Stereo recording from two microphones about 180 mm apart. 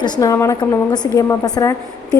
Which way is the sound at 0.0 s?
20° left (ahead or behind).